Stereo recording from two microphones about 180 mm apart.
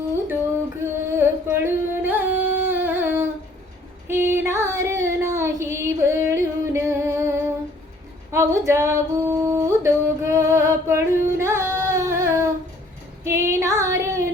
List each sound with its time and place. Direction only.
0.8 s music: 15° right (ahead or behind)
4.1 s female singing: 15° right (ahead or behind)
8.3 s singing: 15° right (ahead or behind)
13.2 s female singing: 15° right (ahead or behind)